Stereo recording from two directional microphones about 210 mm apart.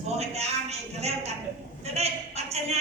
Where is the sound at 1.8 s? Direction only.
30° right (ahead or behind).